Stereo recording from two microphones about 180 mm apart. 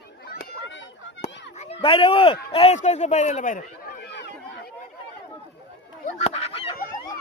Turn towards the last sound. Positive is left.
turn(degrees=30)  # may be behind; listen again after turning